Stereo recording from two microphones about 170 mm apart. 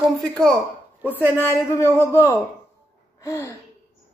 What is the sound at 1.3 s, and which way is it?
A man's voice, 15° left (ahead or behind).